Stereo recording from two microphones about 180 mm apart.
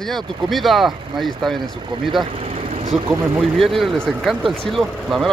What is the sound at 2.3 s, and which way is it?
Vehicle, 35° right (ahead or behind).